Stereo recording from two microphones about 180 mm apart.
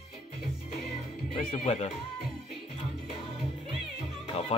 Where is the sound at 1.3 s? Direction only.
35° left (ahead or behind).